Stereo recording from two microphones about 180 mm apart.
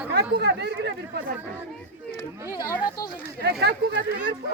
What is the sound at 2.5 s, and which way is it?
Speech, 20° left (ahead or behind).